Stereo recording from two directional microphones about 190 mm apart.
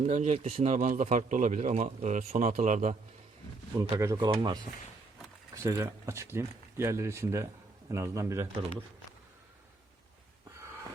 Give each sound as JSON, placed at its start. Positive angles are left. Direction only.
{"t": 0.0, "sound": "a man's voice", "side_deg": -35}
{"t": 3.9, "sound": "speech", "side_deg": -15}
{"t": 5.6, "sound": "speech", "side_deg": -15}